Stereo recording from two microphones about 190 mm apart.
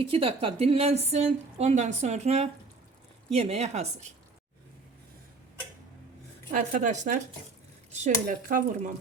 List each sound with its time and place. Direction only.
0.0 s a woman's voice: 30° right (ahead or behind)
6.5 s a woman's voice: 40° right (ahead or behind)